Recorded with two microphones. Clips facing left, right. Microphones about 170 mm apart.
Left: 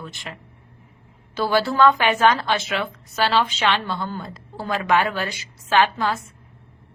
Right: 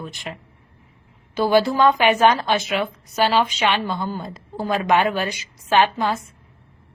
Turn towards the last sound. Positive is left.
turn(degrees=-20)  # may be behind; listen again after turning